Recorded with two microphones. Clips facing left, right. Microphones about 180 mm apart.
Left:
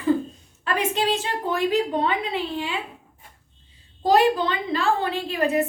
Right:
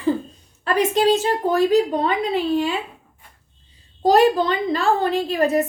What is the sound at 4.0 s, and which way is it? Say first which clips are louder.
A woman's voice: right 3 dB; 40° right (ahead or behind).